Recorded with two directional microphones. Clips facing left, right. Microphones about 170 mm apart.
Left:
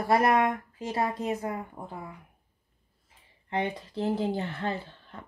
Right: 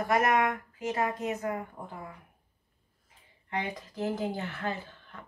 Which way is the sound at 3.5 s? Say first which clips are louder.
Left 4 dB; 30° left (ahead or behind).